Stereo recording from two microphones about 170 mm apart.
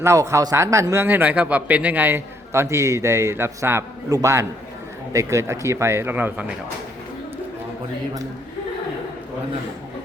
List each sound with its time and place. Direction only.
0.0 s speech: 15° right (ahead or behind)